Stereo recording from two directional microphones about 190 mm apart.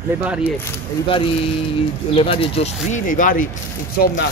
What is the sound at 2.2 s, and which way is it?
Speech, 30° left (ahead or behind).